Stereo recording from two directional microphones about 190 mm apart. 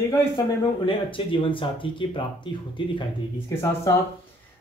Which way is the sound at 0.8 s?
25° left (ahead or behind).